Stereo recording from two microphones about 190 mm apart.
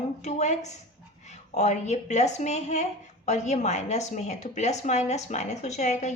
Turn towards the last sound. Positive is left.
turn(degrees=40)  # may be behind; listen again after turning